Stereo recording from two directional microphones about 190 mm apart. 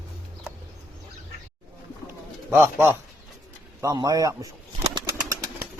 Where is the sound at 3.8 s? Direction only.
20° right (ahead or behind).